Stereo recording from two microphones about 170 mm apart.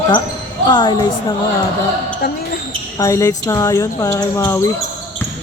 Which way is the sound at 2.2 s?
70° left (ahead or behind).